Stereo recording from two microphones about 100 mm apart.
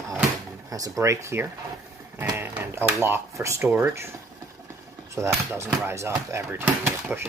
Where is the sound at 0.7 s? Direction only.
35° right (ahead or behind).